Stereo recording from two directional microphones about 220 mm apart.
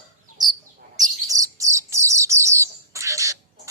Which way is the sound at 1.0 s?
15° right (ahead or behind).